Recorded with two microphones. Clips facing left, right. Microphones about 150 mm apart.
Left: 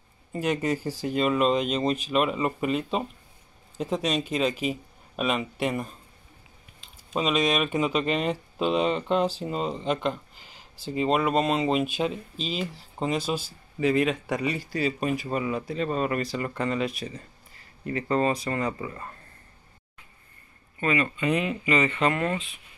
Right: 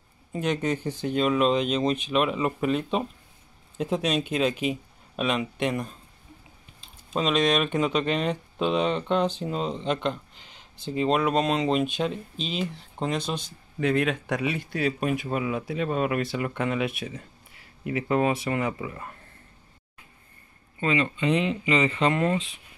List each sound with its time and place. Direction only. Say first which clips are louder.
0.3 s speech: even; 5° left (ahead or behind)
7.2 s speech: right 1 dB; 5° left (ahead or behind)
20.8 s speech: right 1 dB; 20° right (ahead or behind)